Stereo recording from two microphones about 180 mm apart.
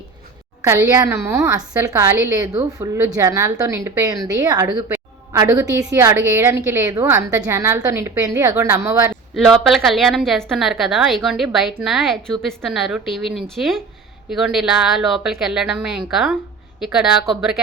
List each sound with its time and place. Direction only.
0.6 s a woman's voice: 15° right (ahead or behind)
9.3 s a woman's voice: centre (ahead or behind)